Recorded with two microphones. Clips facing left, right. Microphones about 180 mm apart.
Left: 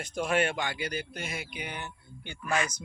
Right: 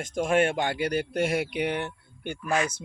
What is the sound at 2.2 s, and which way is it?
Speech, 50° right (ahead or behind).